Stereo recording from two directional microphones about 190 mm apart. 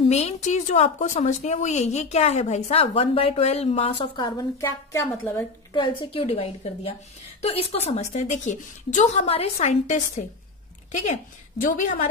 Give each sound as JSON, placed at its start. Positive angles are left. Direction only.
{"t": 0.1, "sound": "a woman's voice", "side_deg": 35}
{"t": 5.7, "sound": "a woman's voice", "side_deg": 25}